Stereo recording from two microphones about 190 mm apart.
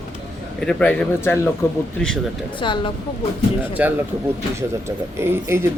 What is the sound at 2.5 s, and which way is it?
Speech, 25° left (ahead or behind).